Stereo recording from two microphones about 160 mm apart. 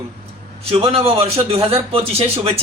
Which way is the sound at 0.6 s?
35° right (ahead or behind).